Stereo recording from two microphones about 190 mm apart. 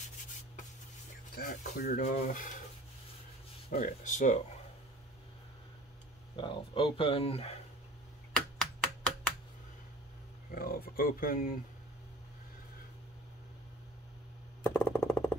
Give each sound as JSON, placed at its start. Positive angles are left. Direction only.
{"t": 1.3, "sound": "speech", "side_deg": 45}
{"t": 3.7, "sound": "speech", "side_deg": 45}
{"t": 6.4, "sound": "speech", "side_deg": 25}
{"t": 8.3, "sound": "a sound", "side_deg": 5}
{"t": 10.5, "sound": "speech", "side_deg": 50}
{"t": 14.6, "sound": "a sound", "side_deg": 10}